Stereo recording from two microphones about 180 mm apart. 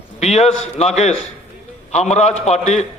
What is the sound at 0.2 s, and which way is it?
A man's voice, 35° left (ahead or behind).